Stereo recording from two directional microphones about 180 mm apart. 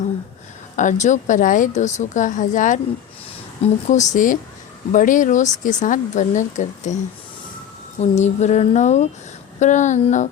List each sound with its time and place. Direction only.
0.8 s speech: 40° left (ahead or behind)
3.8 s speech: 40° left (ahead or behind)
8.1 s a sound: 40° left (ahead or behind)
9.6 s speech: 40° left (ahead or behind)